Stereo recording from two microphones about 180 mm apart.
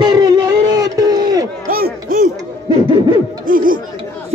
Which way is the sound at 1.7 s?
50° right (ahead or behind).